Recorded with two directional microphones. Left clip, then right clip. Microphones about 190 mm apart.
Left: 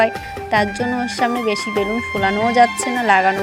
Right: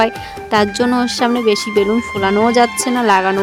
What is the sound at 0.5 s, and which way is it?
Speech, 20° right (ahead or behind).